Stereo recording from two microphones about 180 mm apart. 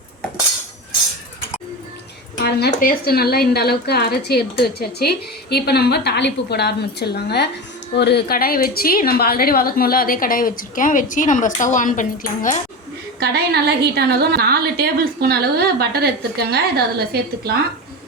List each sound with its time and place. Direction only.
2.4 s a woman's voice: 65° left (ahead or behind); by 12.5 s 45° left (ahead or behind)
13.1 s a woman's voice: 65° right (ahead or behind)